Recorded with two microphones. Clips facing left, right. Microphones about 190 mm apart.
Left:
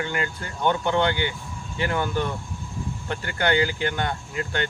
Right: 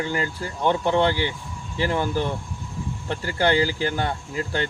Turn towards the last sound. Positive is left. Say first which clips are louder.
# right 2 dB
turn(degrees=-35)  # may be behind; listen again after turning